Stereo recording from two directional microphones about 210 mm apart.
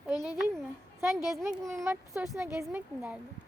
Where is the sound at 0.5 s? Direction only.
15° right (ahead or behind).